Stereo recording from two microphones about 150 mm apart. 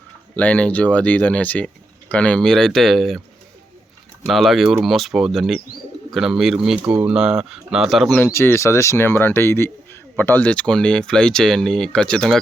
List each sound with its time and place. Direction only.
0.3 s speech: 10° left (ahead or behind)
4.3 s speech: centre (ahead or behind)
8.2 s speech: 15° left (ahead or behind)